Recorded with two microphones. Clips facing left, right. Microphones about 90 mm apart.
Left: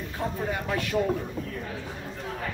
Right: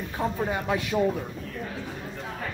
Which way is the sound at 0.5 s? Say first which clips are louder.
Right 2 dB; 20° right (ahead or behind).